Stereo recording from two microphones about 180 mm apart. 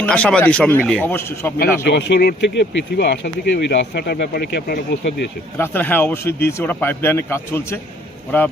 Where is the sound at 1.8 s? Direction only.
70° left (ahead or behind).